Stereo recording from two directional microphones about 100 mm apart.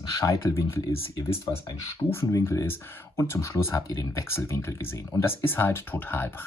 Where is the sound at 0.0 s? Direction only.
35° left (ahead or behind).